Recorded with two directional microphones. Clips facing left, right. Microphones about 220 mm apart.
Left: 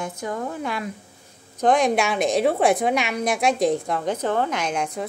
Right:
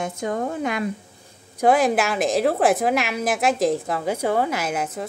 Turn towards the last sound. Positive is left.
turn(degrees=-5)  # may be behind; listen again after turning